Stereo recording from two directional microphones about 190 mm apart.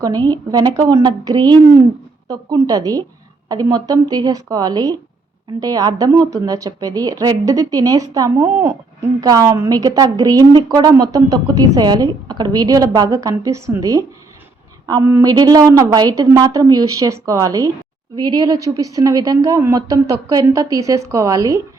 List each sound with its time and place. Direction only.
0.5 s a woman's voice: 20° right (ahead or behind)